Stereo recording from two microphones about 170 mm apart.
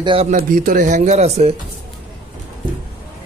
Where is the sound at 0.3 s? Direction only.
50° right (ahead or behind).